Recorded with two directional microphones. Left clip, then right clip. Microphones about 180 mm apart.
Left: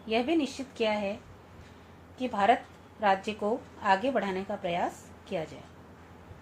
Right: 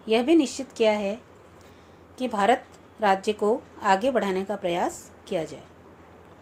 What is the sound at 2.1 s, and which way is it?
A woman's voice, 55° right (ahead or behind).